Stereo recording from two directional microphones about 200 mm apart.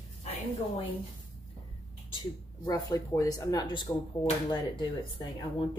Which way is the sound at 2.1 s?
20° left (ahead or behind).